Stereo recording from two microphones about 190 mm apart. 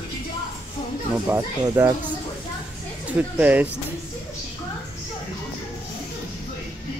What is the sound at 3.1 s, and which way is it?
Speech, 10° right (ahead or behind).